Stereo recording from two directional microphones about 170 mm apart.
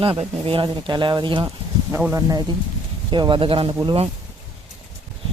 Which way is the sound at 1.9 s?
15° right (ahead or behind).